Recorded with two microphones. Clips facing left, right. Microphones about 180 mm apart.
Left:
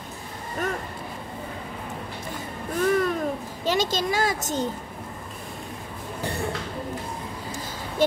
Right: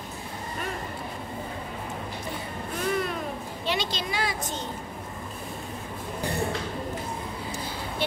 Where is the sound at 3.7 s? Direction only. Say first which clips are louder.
Left 6 dB; 45° left (ahead or behind).